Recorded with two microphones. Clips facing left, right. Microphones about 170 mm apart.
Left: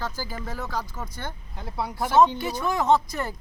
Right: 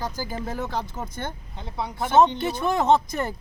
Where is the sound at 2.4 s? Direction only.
25° right (ahead or behind).